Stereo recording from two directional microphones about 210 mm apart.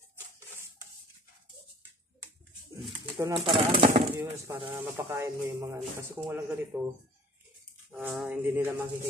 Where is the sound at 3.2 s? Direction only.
25° right (ahead or behind).